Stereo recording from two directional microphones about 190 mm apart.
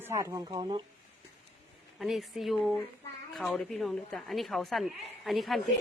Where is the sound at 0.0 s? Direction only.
15° right (ahead or behind).